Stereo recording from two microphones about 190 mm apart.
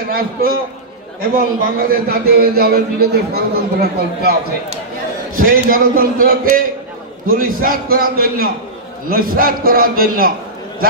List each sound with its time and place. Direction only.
0.1 s a man's voice: 50° right (ahead or behind)
5.4 s a man's voice: 50° right (ahead or behind)